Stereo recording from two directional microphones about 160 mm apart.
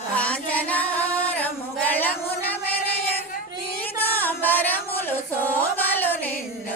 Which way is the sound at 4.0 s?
10° left (ahead or behind).